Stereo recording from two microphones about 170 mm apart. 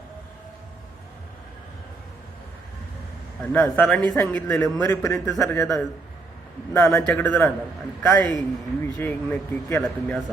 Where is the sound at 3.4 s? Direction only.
10° left (ahead or behind).